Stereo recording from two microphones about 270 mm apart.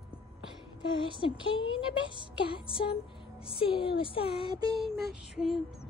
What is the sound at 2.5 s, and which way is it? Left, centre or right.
A woman's voice, centre.